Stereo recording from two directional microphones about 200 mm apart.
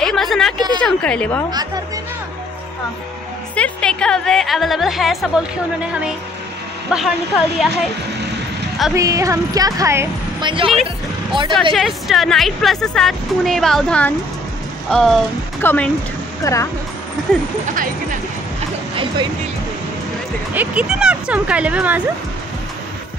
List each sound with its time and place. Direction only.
0.0 s a woman's voice: centre (ahead or behind)
0.6 s speech: 20° right (ahead or behind)
0.8 s a woman's voice: 5° left (ahead or behind)
3.5 s a woman's voice: 5° left (ahead or behind)
6.9 s a woman's voice: 5° right (ahead or behind)
8.9 s speech: 15° right (ahead or behind)
11.7 s a woman's voice: centre (ahead or behind); by 16.6 s 15° left (ahead or behind)
17.3 s a woman's voice: 5° left (ahead or behind)
20.5 s speech: 5° right (ahead or behind)